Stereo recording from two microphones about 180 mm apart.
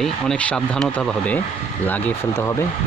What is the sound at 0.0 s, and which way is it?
Speech, 5° left (ahead or behind).